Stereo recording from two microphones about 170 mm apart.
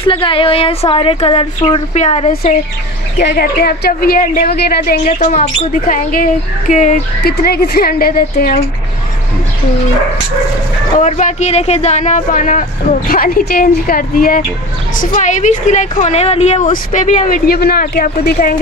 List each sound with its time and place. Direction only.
0.0 s a woman's voice: 30° left (ahead or behind)
3.2 s speech: 75° left (ahead or behind)
5.0 s speech: 50° left (ahead or behind)
7.2 s speech: 65° left (ahead or behind)
11.0 s a woman's voice: 45° left (ahead or behind)